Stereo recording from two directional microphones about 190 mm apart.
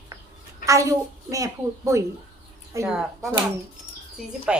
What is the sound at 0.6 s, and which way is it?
Speech, 15° right (ahead or behind).